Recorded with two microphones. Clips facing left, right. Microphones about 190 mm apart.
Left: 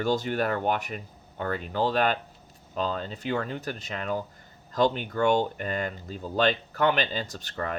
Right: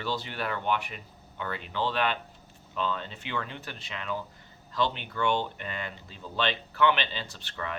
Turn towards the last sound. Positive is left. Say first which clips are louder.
# left 5 dB
turn(degrees=40)  # may be behind; listen again after turning